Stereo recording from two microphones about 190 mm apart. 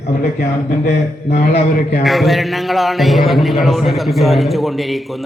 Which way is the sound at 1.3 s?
40° left (ahead or behind).